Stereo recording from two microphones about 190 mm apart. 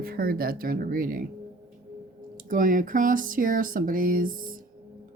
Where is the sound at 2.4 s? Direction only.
45° right (ahead or behind).